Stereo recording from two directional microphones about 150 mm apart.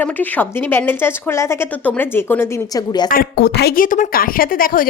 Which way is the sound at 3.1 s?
85° left.